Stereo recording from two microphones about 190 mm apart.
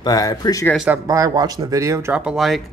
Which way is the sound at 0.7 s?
5° right (ahead or behind).